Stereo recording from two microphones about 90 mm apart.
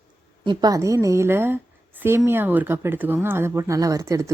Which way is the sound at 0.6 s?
40° right (ahead or behind).